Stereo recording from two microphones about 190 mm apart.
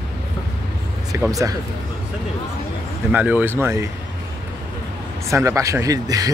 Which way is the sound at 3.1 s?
10° right (ahead or behind).